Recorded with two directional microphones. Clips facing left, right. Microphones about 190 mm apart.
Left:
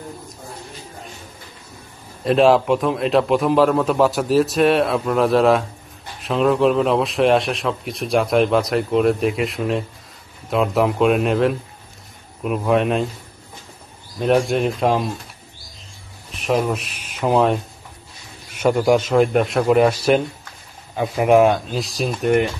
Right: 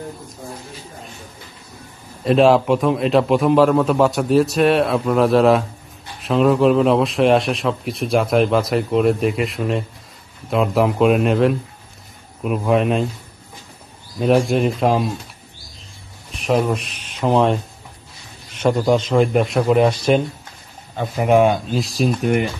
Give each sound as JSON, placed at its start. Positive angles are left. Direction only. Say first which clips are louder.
{"t": 2.2, "sound": "speech", "louder": "right 1 dB", "side_deg": 0}
{"t": 14.2, "sound": "speech", "louder": "right 1 dB", "side_deg": 0}
{"t": 16.3, "sound": "speech", "louder": "right 1 dB", "side_deg": 0}
{"t": 18.6, "sound": "a man's voice", "louder": "left 1 dB", "side_deg": 10}